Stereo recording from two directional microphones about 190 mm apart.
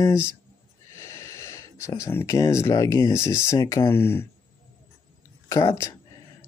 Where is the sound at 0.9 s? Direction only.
15° left (ahead or behind).